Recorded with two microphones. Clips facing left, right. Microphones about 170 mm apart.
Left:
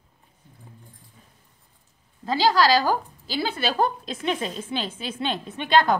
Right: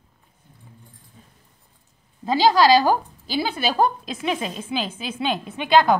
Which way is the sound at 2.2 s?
20° right (ahead or behind).